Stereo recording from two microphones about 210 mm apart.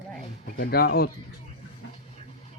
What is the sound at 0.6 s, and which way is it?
Speech, 50° left (ahead or behind).